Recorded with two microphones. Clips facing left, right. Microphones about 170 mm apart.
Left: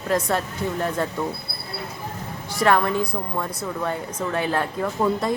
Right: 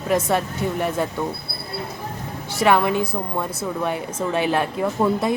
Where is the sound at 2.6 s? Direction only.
15° right (ahead or behind).